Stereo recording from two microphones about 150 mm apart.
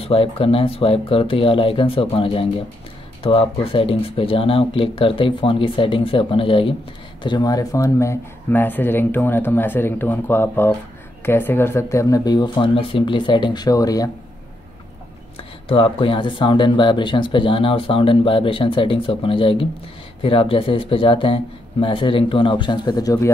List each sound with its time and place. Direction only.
0.0 s speech: 40° left (ahead or behind)
15.7 s speech: 35° left (ahead or behind)